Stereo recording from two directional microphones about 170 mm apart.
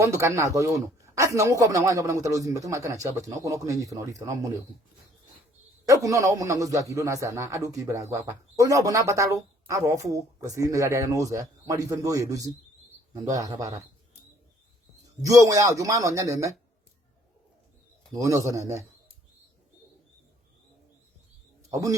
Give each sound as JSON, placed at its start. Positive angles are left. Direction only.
{"t": 0.0, "sound": "a man's voice", "side_deg": -15}
{"t": 5.9, "sound": "a man's voice", "side_deg": -20}
{"t": 15.0, "sound": "a man's voice", "side_deg": -20}
{"t": 18.1, "sound": "a man's voice", "side_deg": -20}
{"t": 21.7, "sound": "a man's voice", "side_deg": -20}